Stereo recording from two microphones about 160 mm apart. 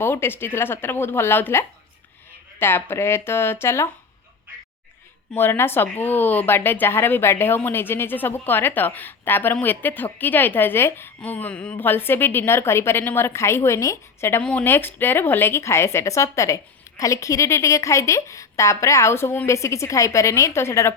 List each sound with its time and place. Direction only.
0.0 s speech: 15° left (ahead or behind)
5.3 s a woman's voice: 15° left (ahead or behind)